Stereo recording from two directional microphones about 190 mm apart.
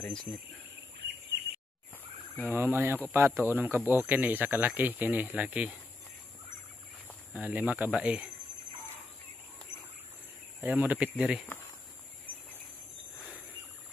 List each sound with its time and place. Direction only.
0.0 s speech: 5° left (ahead or behind)
0.9 s bird vocalization: 60° right (ahead or behind)
2.4 s speech: 10° right (ahead or behind)
7.3 s speech: 10° right (ahead or behind)
10.6 s speech: 10° right (ahead or behind)